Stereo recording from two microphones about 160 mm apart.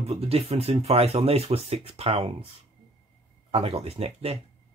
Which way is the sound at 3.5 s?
40° right (ahead or behind).